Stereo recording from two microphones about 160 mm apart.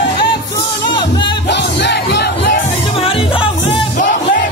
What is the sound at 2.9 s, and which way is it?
Music, 35° left (ahead or behind).